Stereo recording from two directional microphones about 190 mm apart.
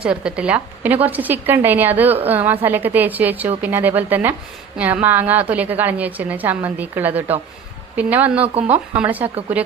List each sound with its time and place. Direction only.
0.0 s a woman's voice: 5° right (ahead or behind)
8.4 s speech: 35° right (ahead or behind)
8.9 s a woman's voice: 10° right (ahead or behind)